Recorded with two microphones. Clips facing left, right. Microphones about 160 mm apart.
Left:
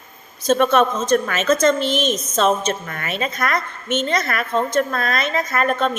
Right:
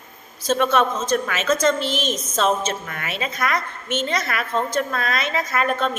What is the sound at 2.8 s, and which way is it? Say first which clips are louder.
A woman's voice: left 3 dB; 5° right (ahead or behind).